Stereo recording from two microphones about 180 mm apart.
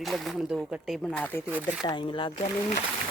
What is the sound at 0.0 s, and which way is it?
Speech, centre (ahead or behind).